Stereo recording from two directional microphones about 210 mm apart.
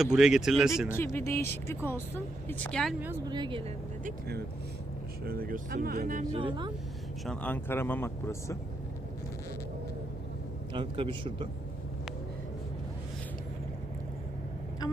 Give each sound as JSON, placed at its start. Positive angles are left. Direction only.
{"t": 0.0, "sound": "speech", "side_deg": -5}
{"t": 0.9, "sound": "speech", "side_deg": 10}
{"t": 3.2, "sound": "a man's voice", "side_deg": -20}
{"t": 4.0, "sound": "speech", "side_deg": -50}
{"t": 6.4, "sound": "a man's voice", "side_deg": -20}
{"t": 7.3, "sound": "speech", "side_deg": 5}
{"t": 10.7, "sound": "a man's voice", "side_deg": -25}